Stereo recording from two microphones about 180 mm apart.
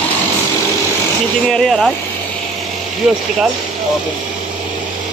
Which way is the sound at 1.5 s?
Centre (ahead or behind).